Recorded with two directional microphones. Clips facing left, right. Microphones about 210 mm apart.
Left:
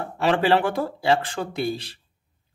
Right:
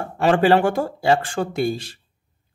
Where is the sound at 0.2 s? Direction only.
45° right (ahead or behind).